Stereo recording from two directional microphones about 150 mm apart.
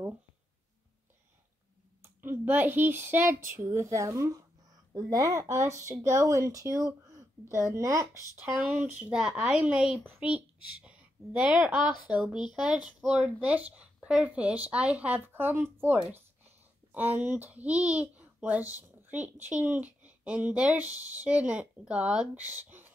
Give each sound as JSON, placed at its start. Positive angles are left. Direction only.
{"t": 2.0, "sound": "speech", "side_deg": -15}
{"t": 8.4, "sound": "speech", "side_deg": -10}